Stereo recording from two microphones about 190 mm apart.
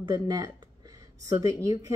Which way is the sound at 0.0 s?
20° right (ahead or behind).